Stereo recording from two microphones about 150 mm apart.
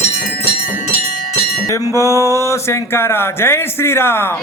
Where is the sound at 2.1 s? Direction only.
20° right (ahead or behind).